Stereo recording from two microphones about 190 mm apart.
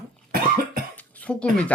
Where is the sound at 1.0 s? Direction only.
10° left (ahead or behind).